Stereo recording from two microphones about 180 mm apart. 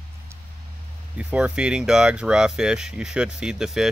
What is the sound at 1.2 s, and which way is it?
Speech, 5° right (ahead or behind).